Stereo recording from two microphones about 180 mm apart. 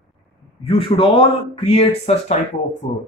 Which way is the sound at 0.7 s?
30° left (ahead or behind).